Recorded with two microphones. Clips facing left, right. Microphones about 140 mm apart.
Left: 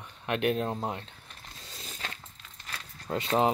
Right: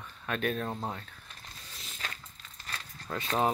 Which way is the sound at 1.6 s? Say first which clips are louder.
Left 2 dB; 25° left (ahead or behind).